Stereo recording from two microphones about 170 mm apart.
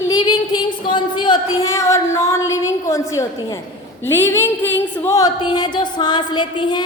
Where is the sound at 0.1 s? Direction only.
25° left (ahead or behind).